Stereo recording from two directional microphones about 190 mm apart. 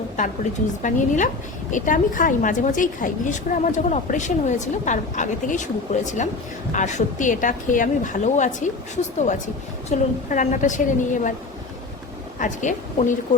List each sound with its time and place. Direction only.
0.8 s a woman's voice: 40° left (ahead or behind)
9.9 s a woman's voice: 40° left (ahead or behind)
12.4 s a woman's voice: 40° left (ahead or behind)